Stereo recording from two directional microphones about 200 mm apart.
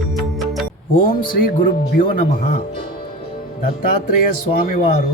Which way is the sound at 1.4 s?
45° left (ahead or behind).